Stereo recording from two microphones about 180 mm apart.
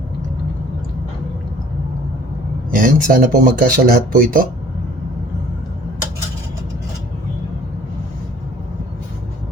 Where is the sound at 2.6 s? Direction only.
50° right (ahead or behind).